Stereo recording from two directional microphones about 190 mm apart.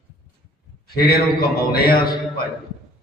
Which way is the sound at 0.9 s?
55° left (ahead or behind).